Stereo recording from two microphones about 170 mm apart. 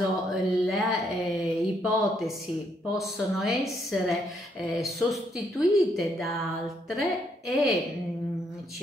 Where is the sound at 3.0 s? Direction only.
Centre (ahead or behind).